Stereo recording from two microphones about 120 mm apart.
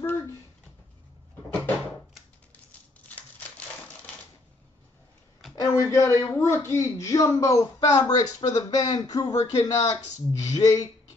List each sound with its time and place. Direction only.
3.1 s typewriter: 10° left (ahead or behind)
5.7 s a man's voice: 25° left (ahead or behind)